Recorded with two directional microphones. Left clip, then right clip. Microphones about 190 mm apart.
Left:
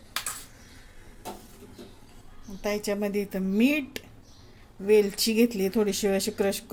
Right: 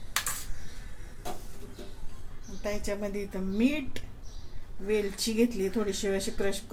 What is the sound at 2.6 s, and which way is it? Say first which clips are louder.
Speech: left 5 dB; 55° left (ahead or behind).